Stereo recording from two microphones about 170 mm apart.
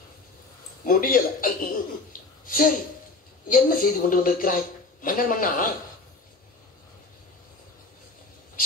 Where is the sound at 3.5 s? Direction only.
60° left (ahead or behind).